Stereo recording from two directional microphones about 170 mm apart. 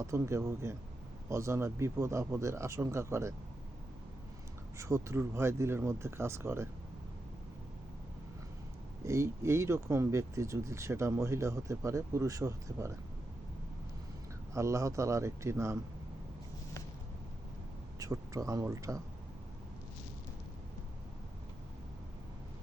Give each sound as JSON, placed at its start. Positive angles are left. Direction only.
{"t": 0.0, "sound": "speech", "side_deg": -15}
{"t": 4.8, "sound": "speech", "side_deg": -15}
{"t": 9.0, "sound": "speech", "side_deg": -15}
{"t": 14.5, "sound": "speech", "side_deg": -15}
{"t": 18.0, "sound": "speech", "side_deg": -20}